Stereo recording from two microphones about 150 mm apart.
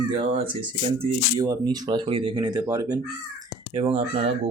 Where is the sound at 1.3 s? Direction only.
25° right (ahead or behind).